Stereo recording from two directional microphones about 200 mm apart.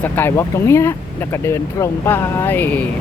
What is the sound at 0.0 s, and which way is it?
Speech, 10° left (ahead or behind).